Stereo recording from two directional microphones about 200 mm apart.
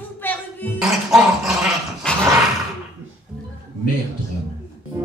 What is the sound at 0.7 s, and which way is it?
Dog, centre (ahead or behind).